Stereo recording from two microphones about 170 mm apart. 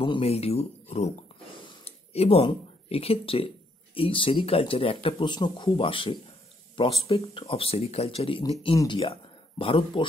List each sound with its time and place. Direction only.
0.0 s speech: 35° left (ahead or behind)